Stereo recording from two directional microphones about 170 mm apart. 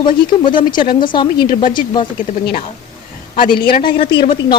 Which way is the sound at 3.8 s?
30° left (ahead or behind).